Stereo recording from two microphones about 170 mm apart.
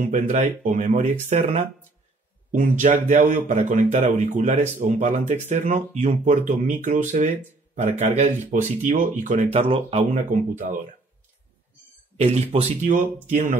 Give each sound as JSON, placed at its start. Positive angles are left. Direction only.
{"t": 0.0, "sound": "speech", "side_deg": -45}
{"t": 10.1, "sound": "speech", "side_deg": -50}
{"t": 12.2, "sound": "speech", "side_deg": -40}